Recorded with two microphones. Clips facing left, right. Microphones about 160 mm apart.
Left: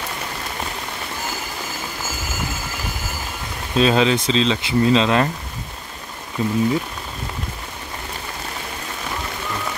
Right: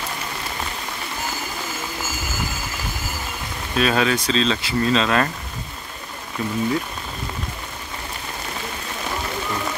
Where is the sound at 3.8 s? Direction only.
20° left (ahead or behind).